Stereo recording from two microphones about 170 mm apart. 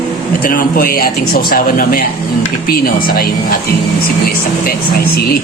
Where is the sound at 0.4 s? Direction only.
60° left (ahead or behind).